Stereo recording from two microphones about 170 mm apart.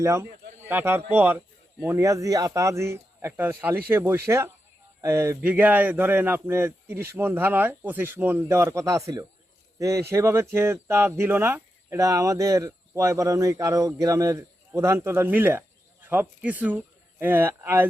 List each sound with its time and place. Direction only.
0.0 s speech: 15° right (ahead or behind)